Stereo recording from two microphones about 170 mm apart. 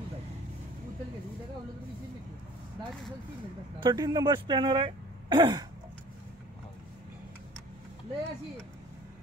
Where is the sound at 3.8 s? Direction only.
25° right (ahead or behind).